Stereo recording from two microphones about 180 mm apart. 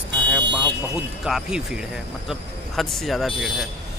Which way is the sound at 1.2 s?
5° right (ahead or behind).